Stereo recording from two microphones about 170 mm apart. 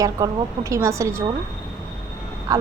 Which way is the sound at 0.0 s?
20° right (ahead or behind).